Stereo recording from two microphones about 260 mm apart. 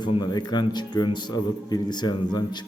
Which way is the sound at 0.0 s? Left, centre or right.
Centre.